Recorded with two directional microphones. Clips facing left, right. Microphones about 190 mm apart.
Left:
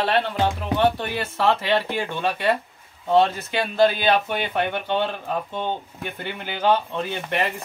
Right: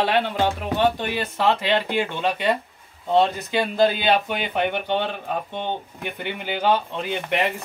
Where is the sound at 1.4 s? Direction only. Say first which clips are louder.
Left 1 dB; 15° right (ahead or behind).